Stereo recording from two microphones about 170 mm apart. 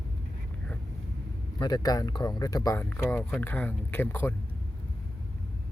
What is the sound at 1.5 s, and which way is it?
Speech, 25° left (ahead or behind).